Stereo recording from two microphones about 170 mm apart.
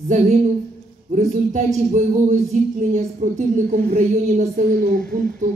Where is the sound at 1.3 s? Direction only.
45° right (ahead or behind).